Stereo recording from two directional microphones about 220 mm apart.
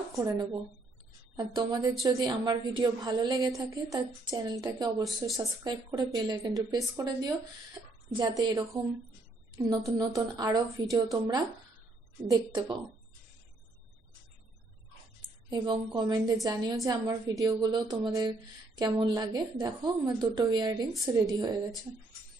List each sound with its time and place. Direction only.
0.1 s a woman's voice: 15° right (ahead or behind)
7.8 s a sound: 15° right (ahead or behind)
8.1 s a woman's voice: 20° right (ahead or behind)
15.2 s a woman's voice: 20° right (ahead or behind)